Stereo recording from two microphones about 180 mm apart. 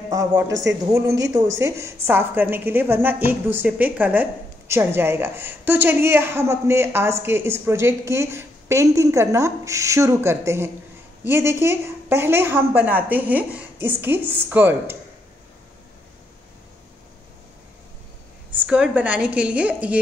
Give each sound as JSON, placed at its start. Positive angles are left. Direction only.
{"t": 0.1, "sound": "a woman's voice", "side_deg": -20}
{"t": 18.5, "sound": "a woman's voice", "side_deg": -5}